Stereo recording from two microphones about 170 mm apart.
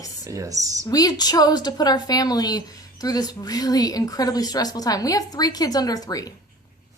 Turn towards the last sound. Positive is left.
turn(degrees=20)  # may be behind; listen again after turning